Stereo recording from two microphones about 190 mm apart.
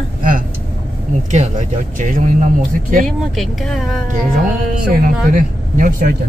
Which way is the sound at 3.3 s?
Centre (ahead or behind).